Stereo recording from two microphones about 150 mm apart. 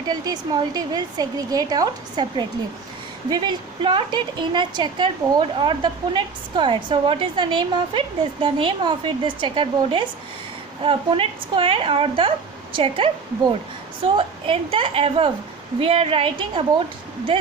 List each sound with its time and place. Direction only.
0.1 s a woman's voice: 25° right (ahead or behind)